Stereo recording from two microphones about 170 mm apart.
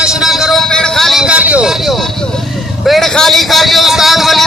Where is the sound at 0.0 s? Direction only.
5° right (ahead or behind).